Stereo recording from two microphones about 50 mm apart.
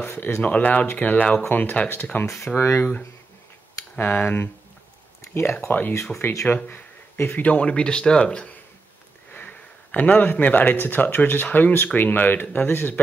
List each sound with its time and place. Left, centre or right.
0.0 s speech: left
0.4 s speech: left
2.5 s speech: left
4.0 s speech: left
5.3 s speech: left
5.7 s speech: left; by 8.5 s centre
9.3 s sniff: left
9.8 s speech: left